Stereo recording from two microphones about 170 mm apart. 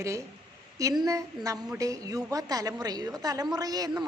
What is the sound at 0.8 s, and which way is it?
A woman's voice, 20° right (ahead or behind).